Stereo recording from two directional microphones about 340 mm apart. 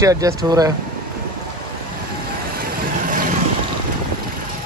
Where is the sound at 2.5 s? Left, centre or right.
Right.